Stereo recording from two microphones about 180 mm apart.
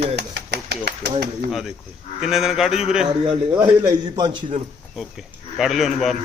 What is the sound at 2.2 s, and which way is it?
Speech, centre (ahead or behind).